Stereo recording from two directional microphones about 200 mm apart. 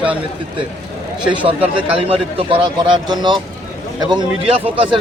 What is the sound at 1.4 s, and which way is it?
A man's voice, 30° right (ahead or behind).